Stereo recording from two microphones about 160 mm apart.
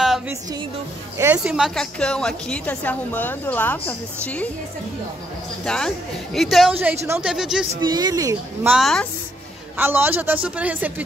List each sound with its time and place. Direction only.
1.1 s a woman's voice: 10° right (ahead or behind); by 4.5 s 10° left (ahead or behind)
5.7 s speech: 5° left (ahead or behind)
6.7 s a man's voice: 10° right (ahead or behind)
7.8 s speech: 25° right (ahead or behind)
8.6 s speech: centre (ahead or behind)
9.8 s a man's voice: 10° right (ahead or behind)